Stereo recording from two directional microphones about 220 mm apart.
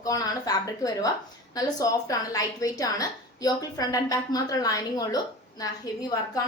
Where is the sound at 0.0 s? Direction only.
15° left (ahead or behind).